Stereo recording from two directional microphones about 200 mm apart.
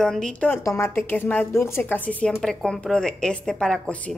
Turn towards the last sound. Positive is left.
turn(degrees=5)  # may be behind; listen again after turning